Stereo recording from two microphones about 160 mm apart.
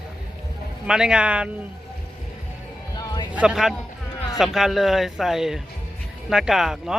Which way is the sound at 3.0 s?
25° left (ahead or behind).